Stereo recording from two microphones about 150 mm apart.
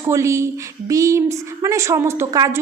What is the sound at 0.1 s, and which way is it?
A woman's voice, 20° right (ahead or behind).